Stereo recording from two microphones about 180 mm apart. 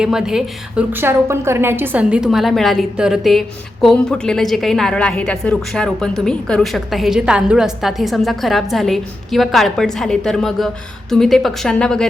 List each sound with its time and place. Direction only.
0.0 s a woman's voice: 5° right (ahead or behind)